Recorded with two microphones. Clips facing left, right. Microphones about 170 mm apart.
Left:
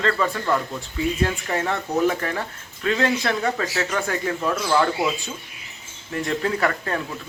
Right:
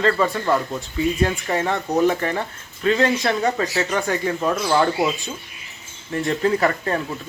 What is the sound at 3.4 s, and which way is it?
Speech, 15° right (ahead or behind).